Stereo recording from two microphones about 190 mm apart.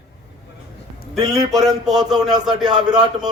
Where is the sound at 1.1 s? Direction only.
20° right (ahead or behind).